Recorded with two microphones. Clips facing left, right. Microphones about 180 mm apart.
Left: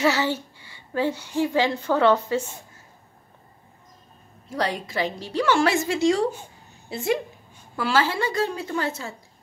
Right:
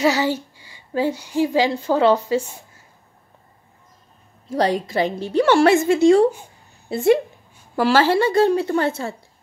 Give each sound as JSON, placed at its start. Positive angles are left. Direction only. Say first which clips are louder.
{"t": 0.0, "sound": "a child's voice", "louder": "right 3 dB", "side_deg": -15}
{"t": 4.6, "sound": "a woman's voice", "louder": "right 7 dB", "side_deg": -35}
{"t": 5.0, "sound": "a woman's voice", "louder": "right 7 dB", "side_deg": -50}
{"t": 5.4, "sound": "a woman's voice", "louder": "right 6 dB", "side_deg": -30}
{"t": 5.7, "sound": "a woman's voice", "louder": "right 7 dB", "side_deg": -50}
{"t": 7.7, "sound": "a woman's voice", "louder": "right 7 dB", "side_deg": -40}
{"t": 8.7, "sound": "a woman's voice", "louder": "right 7 dB", "side_deg": -60}